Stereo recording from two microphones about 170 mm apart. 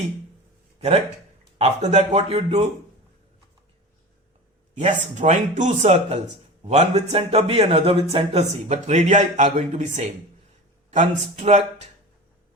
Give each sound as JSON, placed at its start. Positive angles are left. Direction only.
{"t": 0.8, "sound": "speech", "side_deg": -40}
{"t": 4.7, "sound": "speech", "side_deg": -45}